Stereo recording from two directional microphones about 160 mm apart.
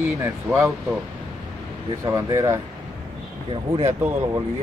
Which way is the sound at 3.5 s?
35° right (ahead or behind).